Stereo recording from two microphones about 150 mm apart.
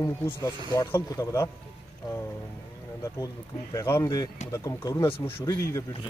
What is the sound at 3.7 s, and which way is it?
Speech, 20° left (ahead or behind).